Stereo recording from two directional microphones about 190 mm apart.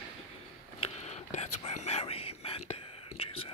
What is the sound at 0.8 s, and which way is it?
Whispering, 35° left (ahead or behind).